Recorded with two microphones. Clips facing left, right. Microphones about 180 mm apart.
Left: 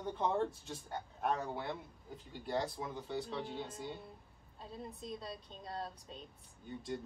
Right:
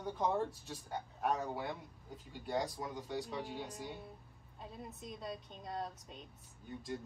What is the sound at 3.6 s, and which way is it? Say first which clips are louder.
Speech: left 1 dB; 15° right (ahead or behind).